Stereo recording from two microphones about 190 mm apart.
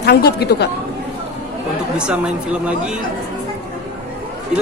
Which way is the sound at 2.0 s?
5° right (ahead or behind).